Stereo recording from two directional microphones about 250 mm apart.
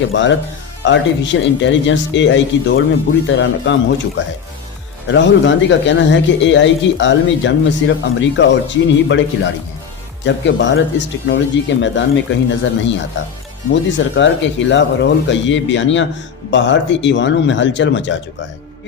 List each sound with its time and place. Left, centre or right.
0.1 s a man's voice: left
5.0 s a man's voice: left
14.0 s a man's voice: left